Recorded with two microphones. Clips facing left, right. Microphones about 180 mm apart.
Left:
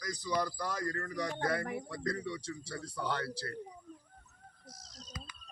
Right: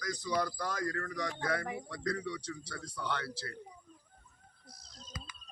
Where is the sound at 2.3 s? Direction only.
25° left (ahead or behind).